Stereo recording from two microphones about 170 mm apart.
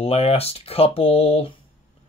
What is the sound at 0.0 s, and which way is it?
Speech, 35° left (ahead or behind).